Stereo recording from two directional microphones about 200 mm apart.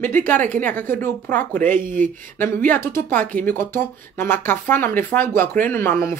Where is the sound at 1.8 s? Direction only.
40° right (ahead or behind).